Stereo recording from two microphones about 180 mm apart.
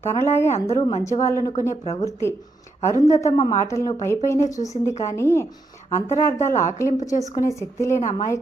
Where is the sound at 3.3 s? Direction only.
20° left (ahead or behind).